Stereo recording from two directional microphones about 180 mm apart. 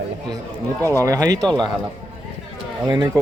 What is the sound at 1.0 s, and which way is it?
Speech, 20° right (ahead or behind).